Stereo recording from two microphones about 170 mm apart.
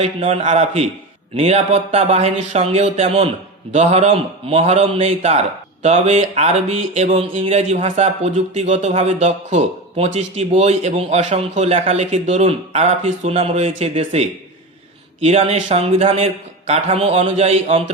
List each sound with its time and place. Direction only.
0.0 s speech: 40° right (ahead or behind)